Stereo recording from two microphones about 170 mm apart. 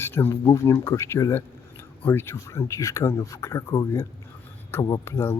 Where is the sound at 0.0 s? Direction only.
15° left (ahead or behind).